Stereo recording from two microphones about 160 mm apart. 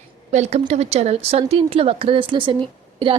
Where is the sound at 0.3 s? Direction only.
45° right (ahead or behind).